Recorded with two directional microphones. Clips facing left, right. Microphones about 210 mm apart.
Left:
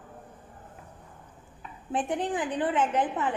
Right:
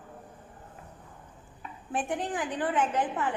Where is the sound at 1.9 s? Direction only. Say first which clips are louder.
Left 3 dB; 20° left (ahead or behind).